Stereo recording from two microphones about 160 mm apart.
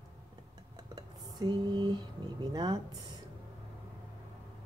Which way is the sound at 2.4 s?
25° right (ahead or behind).